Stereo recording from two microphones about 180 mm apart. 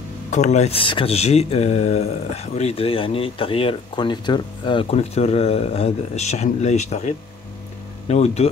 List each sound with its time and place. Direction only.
0.3 s speech: 40° left (ahead or behind)